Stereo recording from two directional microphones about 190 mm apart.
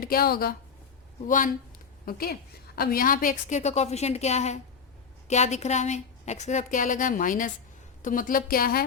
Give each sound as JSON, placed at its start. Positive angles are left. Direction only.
{"t": 0.0, "sound": "a woman's voice", "side_deg": 50}